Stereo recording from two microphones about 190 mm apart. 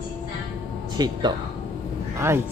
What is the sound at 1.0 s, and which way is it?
Speech, 20° right (ahead or behind).